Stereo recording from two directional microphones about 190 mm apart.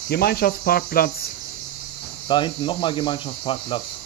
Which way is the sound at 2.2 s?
25° left (ahead or behind).